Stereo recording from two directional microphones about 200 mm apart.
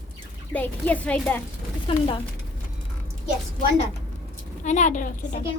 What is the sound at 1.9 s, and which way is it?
Speech, 25° left (ahead or behind).